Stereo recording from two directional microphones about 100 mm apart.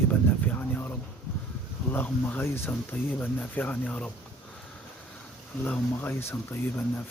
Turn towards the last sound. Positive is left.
turn(degrees=15)  # may be behind; listen again after turning